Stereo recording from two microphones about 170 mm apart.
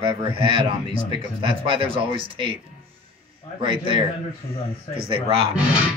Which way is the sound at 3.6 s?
30° right (ahead or behind).